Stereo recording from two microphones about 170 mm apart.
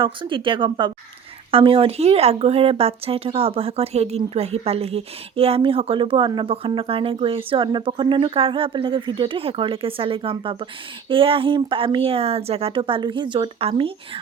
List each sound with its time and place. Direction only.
0.0 s speech: 30° right (ahead or behind)